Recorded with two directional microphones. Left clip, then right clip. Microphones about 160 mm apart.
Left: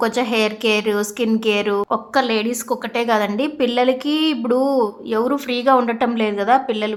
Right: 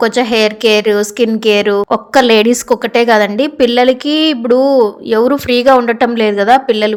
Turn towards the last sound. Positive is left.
turn(degrees=-30)  # may be behind; listen again after turning